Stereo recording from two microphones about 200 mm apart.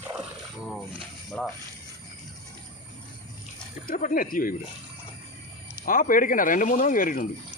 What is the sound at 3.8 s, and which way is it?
Speech, 45° left (ahead or behind).